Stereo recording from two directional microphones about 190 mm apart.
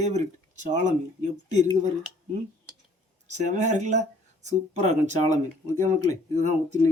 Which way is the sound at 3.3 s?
40° right (ahead or behind).